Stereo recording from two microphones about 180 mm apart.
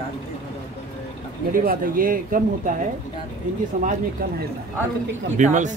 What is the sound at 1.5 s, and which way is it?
Speech, 50° right (ahead or behind).